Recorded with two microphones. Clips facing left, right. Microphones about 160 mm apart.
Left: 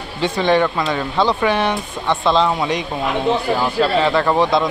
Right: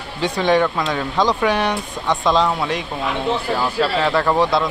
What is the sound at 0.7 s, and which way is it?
Speech, 5° left (ahead or behind).